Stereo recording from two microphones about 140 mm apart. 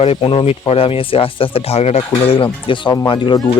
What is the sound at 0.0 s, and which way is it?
Speech, 40° left (ahead or behind).